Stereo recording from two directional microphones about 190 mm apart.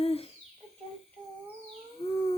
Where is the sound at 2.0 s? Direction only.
20° left (ahead or behind).